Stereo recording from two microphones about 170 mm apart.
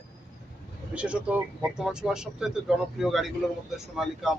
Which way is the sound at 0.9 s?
5° right (ahead or behind).